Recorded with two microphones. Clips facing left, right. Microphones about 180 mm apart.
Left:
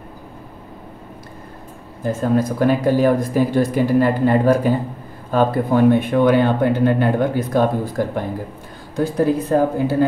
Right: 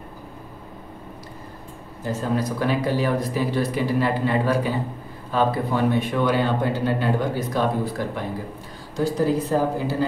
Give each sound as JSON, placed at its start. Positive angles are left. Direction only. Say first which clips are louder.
{"t": 2.0, "sound": "speech", "louder": "left 6 dB", "side_deg": 50}